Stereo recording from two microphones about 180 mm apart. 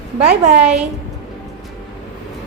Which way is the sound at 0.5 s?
5° right (ahead or behind).